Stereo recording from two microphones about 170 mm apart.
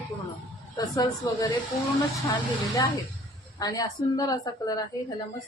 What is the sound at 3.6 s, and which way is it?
Speech, 20° left (ahead or behind).